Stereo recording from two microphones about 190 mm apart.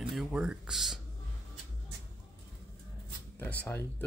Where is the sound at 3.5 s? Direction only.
10° left (ahead or behind).